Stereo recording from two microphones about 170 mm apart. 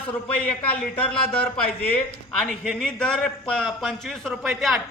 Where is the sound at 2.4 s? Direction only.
5° left (ahead or behind).